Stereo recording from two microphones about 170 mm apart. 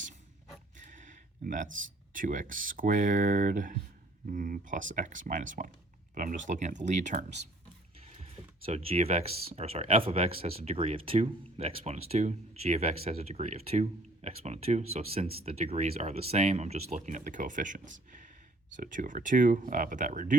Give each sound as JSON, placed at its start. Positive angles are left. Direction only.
{"t": 0.9, "sound": "a sound", "side_deg": -50}
{"t": 2.1, "sound": "speech", "side_deg": -50}
{"t": 18.8, "sound": "speech", "side_deg": -50}